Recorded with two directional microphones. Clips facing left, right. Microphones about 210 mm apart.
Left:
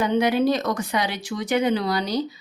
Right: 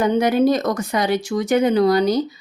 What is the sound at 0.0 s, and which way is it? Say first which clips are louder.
Speech: right 4 dB; 45° right (ahead or behind).